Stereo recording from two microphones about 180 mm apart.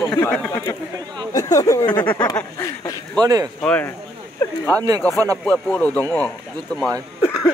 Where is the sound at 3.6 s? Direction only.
10° left (ahead or behind).